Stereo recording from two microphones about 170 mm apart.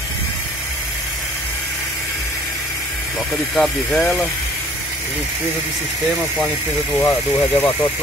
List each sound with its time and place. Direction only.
3.5 s speech: 5° left (ahead or behind)
7.0 s speech: 10° left (ahead or behind)